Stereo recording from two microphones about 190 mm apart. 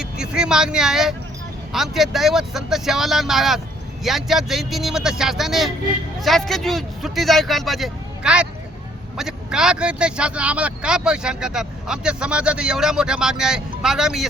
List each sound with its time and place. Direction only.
0.0 s speech: 5° right (ahead or behind)